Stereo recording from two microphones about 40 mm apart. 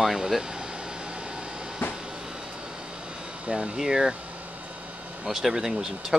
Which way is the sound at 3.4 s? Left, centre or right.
Right.